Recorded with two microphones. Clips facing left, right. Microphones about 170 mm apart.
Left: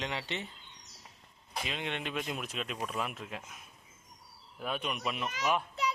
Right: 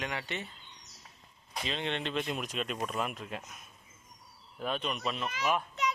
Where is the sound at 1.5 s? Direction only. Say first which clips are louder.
Right 2 dB; 5° left (ahead or behind).